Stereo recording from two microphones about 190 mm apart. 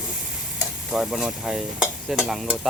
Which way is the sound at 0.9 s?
Centre (ahead or behind).